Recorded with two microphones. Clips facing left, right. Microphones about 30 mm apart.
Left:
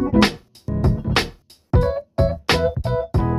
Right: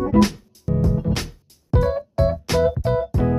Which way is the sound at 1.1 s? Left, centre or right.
Left.